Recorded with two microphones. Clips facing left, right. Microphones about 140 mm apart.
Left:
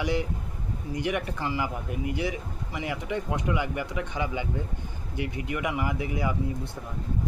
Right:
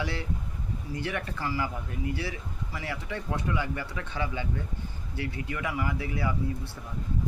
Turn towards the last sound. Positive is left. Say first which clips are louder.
# left 2 dB
turn(degrees=20)  # may be behind; listen again after turning